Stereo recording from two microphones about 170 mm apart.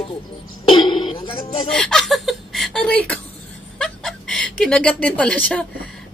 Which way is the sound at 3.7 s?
5° left (ahead or behind).